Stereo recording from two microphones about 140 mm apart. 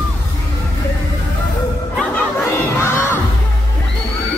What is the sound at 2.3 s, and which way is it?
Crowd, 20° left (ahead or behind).